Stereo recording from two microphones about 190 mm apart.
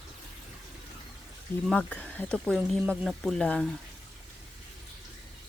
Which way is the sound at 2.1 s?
5° left (ahead or behind).